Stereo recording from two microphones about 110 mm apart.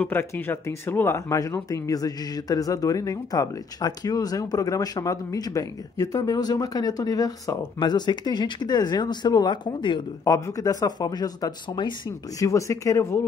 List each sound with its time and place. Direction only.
0.0 s speech: 20° left (ahead or behind); by 10.0 s 45° left (ahead or behind)
10.2 s speech: 35° left (ahead or behind)